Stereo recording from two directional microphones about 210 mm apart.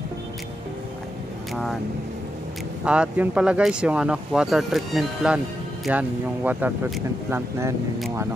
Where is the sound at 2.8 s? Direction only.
5° right (ahead or behind).